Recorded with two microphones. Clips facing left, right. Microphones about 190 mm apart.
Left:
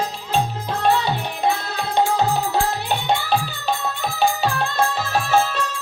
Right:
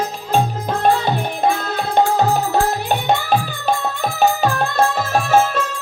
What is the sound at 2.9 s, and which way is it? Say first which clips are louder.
Music: right 3 dB; 45° right (ahead or behind).